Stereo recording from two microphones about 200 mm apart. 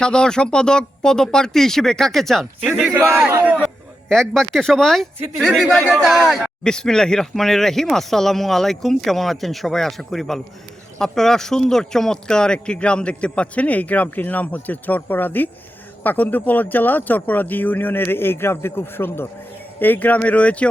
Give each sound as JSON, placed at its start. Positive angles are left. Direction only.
{"t": 0.0, "sound": "a man's voice", "side_deg": 5}